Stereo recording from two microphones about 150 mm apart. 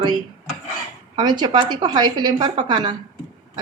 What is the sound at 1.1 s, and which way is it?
A woman's voice, 30° right (ahead or behind).